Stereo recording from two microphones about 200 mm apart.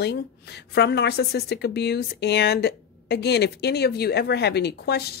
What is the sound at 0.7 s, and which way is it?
A woman's voice, 55° left (ahead or behind).